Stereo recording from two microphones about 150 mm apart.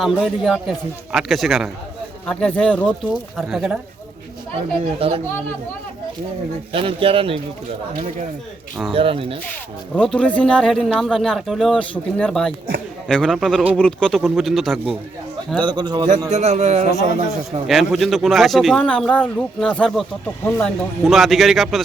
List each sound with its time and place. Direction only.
0.0 s a man's voice: centre (ahead or behind)
4.5 s speech: 40° right (ahead or behind)
6.7 s speech: 40° right (ahead or behind)
8.9 s speech: 40° right (ahead or behind)
9.9 s speech: 5° left (ahead or behind)
15.5 s a man's voice: 30° right (ahead or behind)
16.3 s a man's voice: 50° right (ahead or behind)
17.7 s speech: centre (ahead or behind)